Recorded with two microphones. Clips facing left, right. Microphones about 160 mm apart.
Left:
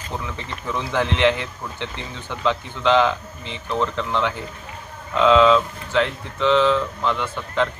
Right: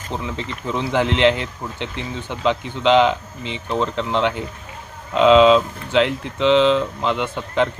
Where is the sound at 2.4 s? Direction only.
15° right (ahead or behind).